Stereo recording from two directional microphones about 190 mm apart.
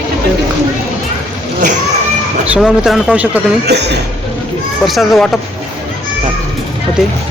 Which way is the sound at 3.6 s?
60° right (ahead or behind).